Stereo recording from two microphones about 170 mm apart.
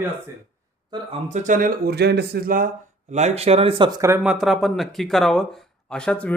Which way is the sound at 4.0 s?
15° right (ahead or behind).